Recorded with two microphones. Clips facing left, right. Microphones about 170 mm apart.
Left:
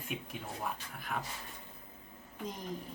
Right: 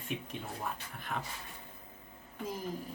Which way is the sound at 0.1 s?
5° left (ahead or behind).